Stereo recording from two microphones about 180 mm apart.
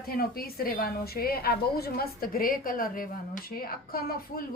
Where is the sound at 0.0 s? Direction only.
55° left (ahead or behind).